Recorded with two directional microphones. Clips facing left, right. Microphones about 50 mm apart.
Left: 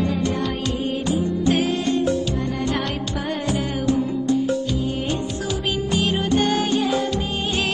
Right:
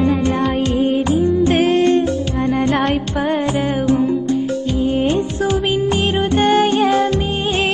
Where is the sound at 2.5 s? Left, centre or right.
Right.